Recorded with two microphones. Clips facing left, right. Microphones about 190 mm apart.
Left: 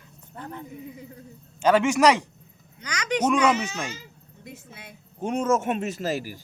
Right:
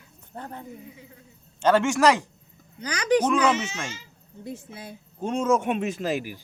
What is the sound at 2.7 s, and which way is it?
Speech, 35° right (ahead or behind).